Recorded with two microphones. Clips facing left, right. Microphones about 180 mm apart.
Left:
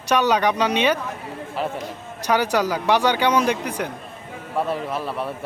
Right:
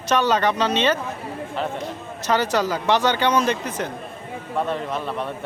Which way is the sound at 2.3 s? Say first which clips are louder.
Left 1 dB; 10° left (ahead or behind).